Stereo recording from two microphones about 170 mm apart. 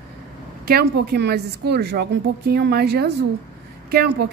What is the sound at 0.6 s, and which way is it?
A woman's voice, 65° right (ahead or behind).